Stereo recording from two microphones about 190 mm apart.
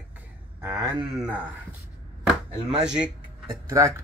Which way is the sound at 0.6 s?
15° right (ahead or behind).